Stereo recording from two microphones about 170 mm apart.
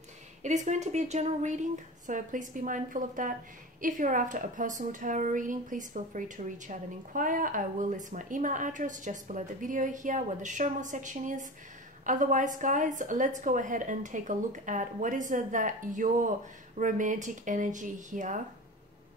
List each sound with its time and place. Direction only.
0.4 s a woman's voice: 45° right (ahead or behind)